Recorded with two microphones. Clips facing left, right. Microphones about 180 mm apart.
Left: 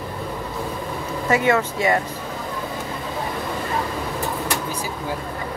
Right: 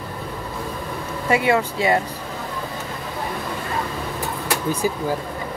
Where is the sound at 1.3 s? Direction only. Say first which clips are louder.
Even; 15° right (ahead or behind).